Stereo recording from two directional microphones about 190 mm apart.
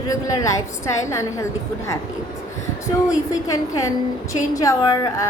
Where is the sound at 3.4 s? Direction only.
15° left (ahead or behind).